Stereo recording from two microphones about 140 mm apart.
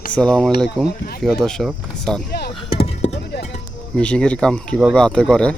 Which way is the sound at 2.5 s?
40° left (ahead or behind).